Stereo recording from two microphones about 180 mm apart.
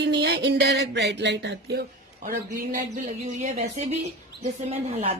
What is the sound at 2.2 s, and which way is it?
Speech, 45° right (ahead or behind).